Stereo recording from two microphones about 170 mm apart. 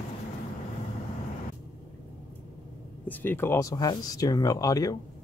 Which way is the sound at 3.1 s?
10° left (ahead or behind).